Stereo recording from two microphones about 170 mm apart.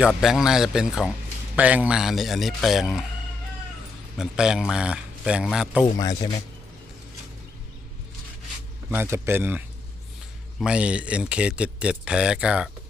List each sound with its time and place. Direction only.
0.0 s speech: 5° right (ahead or behind)
4.2 s speech: 5° right (ahead or behind)
5.8 s speech: 25° left (ahead or behind)
8.9 s speech: 15° right (ahead or behind)